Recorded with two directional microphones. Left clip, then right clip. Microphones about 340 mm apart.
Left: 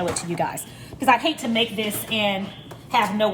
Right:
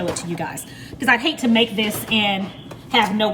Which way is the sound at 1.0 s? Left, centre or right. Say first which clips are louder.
Right 1 dB; centre.